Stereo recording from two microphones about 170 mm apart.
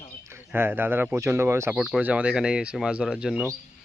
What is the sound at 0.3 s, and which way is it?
Speech, 15° right (ahead or behind).